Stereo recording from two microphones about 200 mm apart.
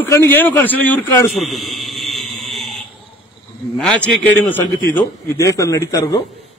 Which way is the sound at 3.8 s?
5° left (ahead or behind).